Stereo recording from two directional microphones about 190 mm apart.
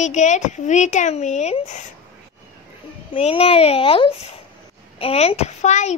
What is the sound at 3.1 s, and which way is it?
A child's voice, 30° left (ahead or behind).